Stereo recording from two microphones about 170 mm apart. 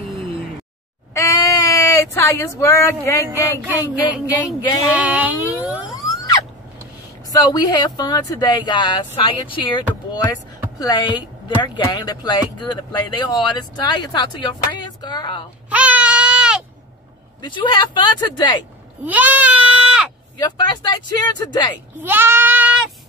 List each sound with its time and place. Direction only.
1.1 s a sound: 20° left (ahead or behind)
4.9 s a sound: 10° right (ahead or behind)
6.0 s a sound: 20° left (ahead or behind)
7.3 s a woman's voice: 25° left (ahead or behind)
15.7 s baby cry: 10° right (ahead or behind)
17.4 s a woman's voice: 25° left (ahead or behind)
19.0 s sheep: 10° right (ahead or behind)
20.3 s a woman's voice: 25° left (ahead or behind)
22.0 s goat: 10° right (ahead or behind)